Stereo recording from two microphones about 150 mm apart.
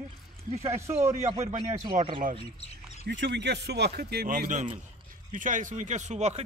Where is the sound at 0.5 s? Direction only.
45° right (ahead or behind).